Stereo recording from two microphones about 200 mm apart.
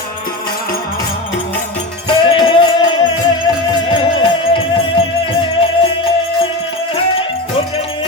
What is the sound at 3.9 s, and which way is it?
Music, 25° left (ahead or behind).